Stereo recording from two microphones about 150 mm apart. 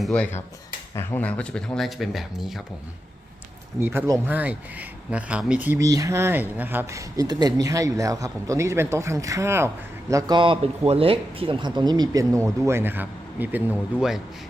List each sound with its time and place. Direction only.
0.0 s speech: 5° left (ahead or behind)
3.8 s speech: 15° right (ahead or behind)